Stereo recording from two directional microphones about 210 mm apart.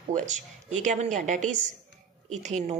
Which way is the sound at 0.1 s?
35° right (ahead or behind).